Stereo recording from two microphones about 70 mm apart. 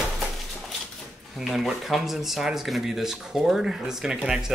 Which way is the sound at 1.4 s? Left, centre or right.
Centre.